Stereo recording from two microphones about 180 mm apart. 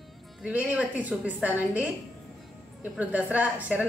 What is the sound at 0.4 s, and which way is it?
A woman's voice, 5° right (ahead or behind).